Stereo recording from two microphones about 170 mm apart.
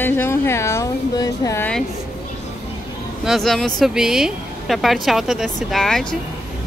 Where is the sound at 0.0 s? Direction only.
15° left (ahead or behind).